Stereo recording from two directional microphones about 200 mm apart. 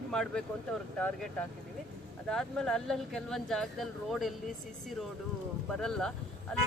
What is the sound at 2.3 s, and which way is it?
Speech, 5° left (ahead or behind).